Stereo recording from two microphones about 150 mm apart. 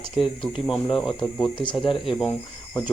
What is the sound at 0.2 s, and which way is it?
Speech, 35° left (ahead or behind).